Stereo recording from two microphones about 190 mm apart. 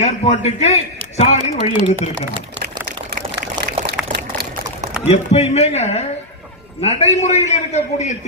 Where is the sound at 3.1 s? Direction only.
40° right (ahead or behind).